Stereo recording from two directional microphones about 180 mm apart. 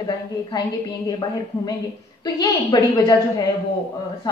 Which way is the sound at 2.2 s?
20° left (ahead or behind).